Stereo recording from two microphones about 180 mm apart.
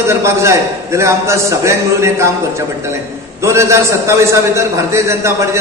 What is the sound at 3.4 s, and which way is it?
A man's voice, 15° right (ahead or behind).